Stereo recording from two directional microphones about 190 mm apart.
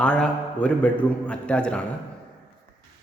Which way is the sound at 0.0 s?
5° left (ahead or behind).